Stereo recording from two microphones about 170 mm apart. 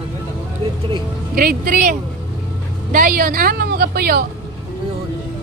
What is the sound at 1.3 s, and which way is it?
A woman's voice, 55° right (ahead or behind).